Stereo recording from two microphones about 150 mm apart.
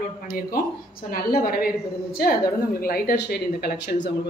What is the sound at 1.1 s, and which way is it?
A woman's voice, 80° left.